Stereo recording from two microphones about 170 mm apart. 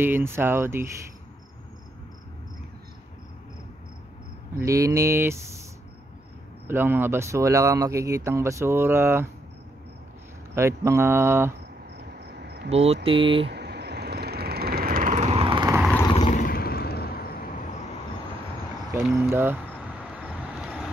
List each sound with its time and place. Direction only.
0.0 s speech: 15° right (ahead or behind)
4.6 s speech: 20° right (ahead or behind)
6.7 s speech: 10° right (ahead or behind)
10.5 s speech: 15° right (ahead or behind)
12.4 s cricket: 80° right
12.6 s speech: 35° right (ahead or behind)
13.5 s vehicle: 80° right; by 15.7 s 30° right (ahead or behind)
16.2 s a sound: 45° left (ahead or behind); by 17.5 s 65° left (ahead or behind)
19.1 s speech: 15° right (ahead or behind)
20.2 s vehicle: 5° right (ahead or behind)